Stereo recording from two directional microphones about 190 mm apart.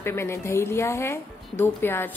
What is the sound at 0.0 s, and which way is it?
Speech, 15° left (ahead or behind).